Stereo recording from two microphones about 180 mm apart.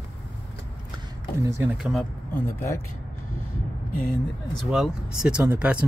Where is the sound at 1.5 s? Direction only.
15° right (ahead or behind).